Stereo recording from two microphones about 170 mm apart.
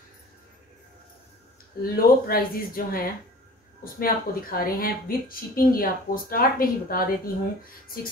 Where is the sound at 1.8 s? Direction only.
60° left (ahead or behind).